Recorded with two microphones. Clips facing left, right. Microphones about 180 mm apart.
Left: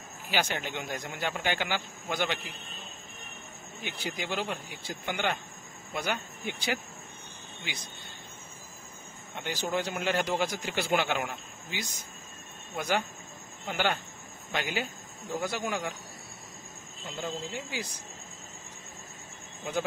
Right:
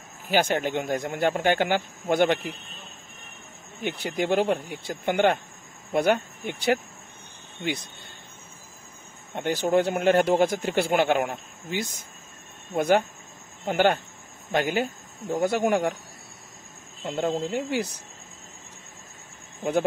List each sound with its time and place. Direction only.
0.3 s speech: 50° right (ahead or behind)
3.8 s speech: 60° right (ahead or behind)
9.3 s speech: 55° right (ahead or behind)
17.0 s speech: 60° right (ahead or behind)